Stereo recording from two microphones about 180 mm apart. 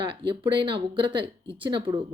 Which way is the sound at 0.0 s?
30° right (ahead or behind).